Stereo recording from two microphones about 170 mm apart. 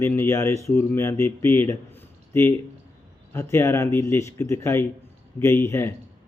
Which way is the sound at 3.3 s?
15° left (ahead or behind).